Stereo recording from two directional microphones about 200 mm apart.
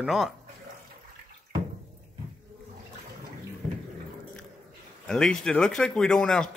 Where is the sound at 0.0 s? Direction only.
Centre (ahead or behind).